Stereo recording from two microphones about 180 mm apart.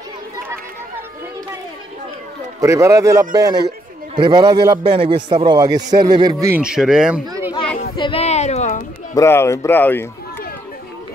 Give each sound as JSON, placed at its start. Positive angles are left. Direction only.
{"t": 2.6, "sound": "a man's voice", "side_deg": -15}
{"t": 6.4, "sound": "speech", "side_deg": -10}
{"t": 7.2, "sound": "chatter", "side_deg": -15}
{"t": 7.5, "sound": "a sound", "side_deg": 30}
{"t": 9.1, "sound": "speech", "side_deg": 15}